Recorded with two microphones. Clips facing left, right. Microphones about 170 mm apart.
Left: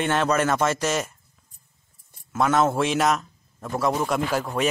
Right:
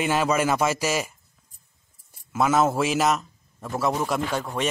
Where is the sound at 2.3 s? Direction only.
5° right (ahead or behind).